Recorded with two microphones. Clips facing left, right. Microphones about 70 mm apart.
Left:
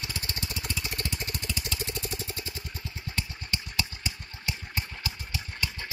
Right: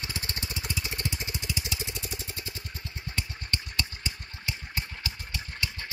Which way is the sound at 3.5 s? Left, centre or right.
Centre.